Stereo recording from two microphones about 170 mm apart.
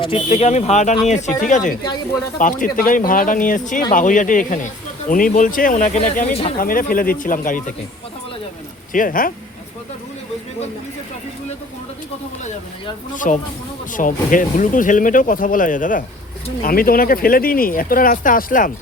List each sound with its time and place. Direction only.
0.0 s speech: 35° left (ahead or behind)
8.9 s speech: 55° left (ahead or behind)
13.1 s speech: 50° left (ahead or behind)